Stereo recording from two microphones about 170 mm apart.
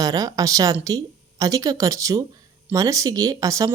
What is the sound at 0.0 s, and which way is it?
Speech, 20° right (ahead or behind).